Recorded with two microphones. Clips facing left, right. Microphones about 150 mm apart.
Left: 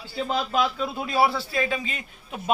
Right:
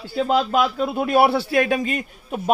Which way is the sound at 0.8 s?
55° right (ahead or behind).